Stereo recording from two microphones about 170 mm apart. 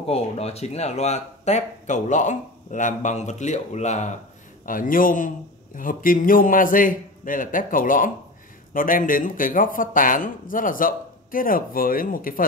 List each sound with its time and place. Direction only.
0.0 s speech: 35° left (ahead or behind)
4.6 s speech: 55° left (ahead or behind)